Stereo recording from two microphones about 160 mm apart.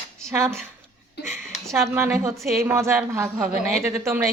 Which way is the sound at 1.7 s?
15° right (ahead or behind).